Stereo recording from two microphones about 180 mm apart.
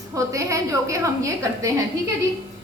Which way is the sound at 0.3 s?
15° right (ahead or behind).